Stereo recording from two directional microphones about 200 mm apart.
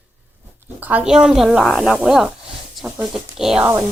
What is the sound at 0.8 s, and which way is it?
A woman's voice, 10° right (ahead or behind).